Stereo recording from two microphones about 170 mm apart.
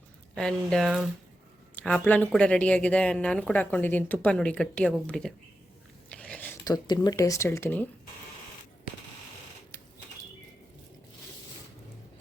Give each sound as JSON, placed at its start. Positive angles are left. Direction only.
{"t": 0.3, "sound": "speech", "side_deg": 5}
{"t": 6.1, "sound": "whispering", "side_deg": 5}
{"t": 6.7, "sound": "speech", "side_deg": 25}